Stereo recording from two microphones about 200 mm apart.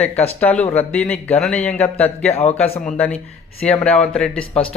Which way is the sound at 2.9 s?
5° left (ahead or behind).